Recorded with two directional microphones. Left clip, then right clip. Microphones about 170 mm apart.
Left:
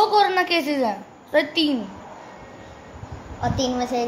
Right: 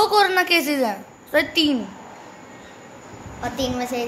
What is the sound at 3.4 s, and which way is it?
Speech, 15° left (ahead or behind).